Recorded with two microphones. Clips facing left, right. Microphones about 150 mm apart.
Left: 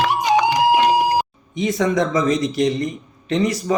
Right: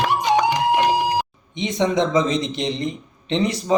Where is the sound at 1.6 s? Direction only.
20° right (ahead or behind).